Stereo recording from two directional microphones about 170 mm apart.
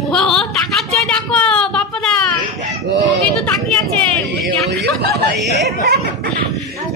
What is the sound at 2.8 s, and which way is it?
Speech, 90° right.